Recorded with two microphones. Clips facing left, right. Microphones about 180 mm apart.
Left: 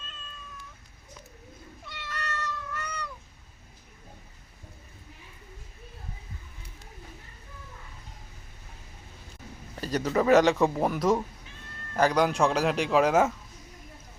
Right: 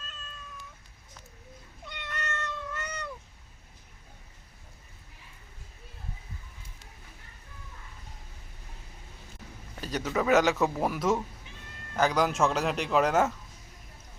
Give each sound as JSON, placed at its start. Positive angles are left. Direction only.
{"t": 1.8, "sound": "cat", "side_deg": -20}
{"t": 9.9, "sound": "speech", "side_deg": 0}